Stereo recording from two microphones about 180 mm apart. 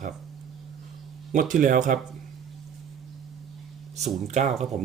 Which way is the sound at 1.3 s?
50° right (ahead or behind).